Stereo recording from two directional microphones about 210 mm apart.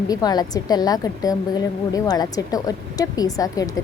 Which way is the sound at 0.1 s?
20° left (ahead or behind).